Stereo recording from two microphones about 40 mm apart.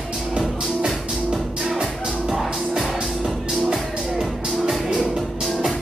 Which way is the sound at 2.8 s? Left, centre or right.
Centre.